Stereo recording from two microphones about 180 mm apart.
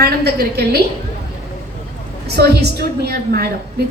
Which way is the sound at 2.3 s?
65° right (ahead or behind).